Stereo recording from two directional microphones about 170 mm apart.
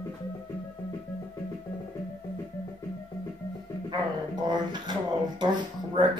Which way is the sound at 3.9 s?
25° right (ahead or behind).